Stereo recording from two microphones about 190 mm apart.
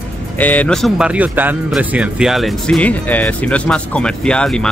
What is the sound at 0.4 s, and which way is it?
Speech, 10° left (ahead or behind).